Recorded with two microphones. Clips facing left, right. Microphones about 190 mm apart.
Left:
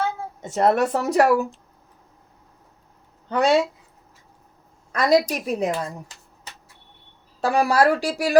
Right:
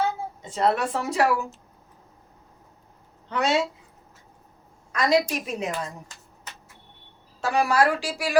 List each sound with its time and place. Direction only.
0.4 s speech: 45° left (ahead or behind)
3.2 s speech: 35° left (ahead or behind)
4.9 s speech: 35° left (ahead or behind)
7.4 s speech: 35° left (ahead or behind)